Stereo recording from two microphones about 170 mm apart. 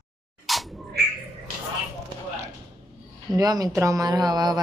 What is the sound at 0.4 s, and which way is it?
Dog, centre (ahead or behind).